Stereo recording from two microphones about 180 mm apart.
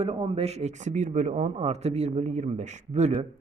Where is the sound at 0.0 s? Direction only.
30° right (ahead or behind).